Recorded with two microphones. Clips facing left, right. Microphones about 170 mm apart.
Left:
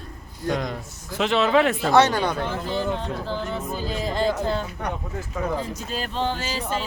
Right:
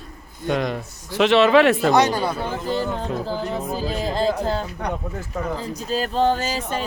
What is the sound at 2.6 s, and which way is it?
Speech, 40° right (ahead or behind).